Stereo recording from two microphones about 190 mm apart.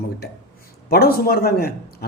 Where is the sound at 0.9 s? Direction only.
55° left (ahead or behind).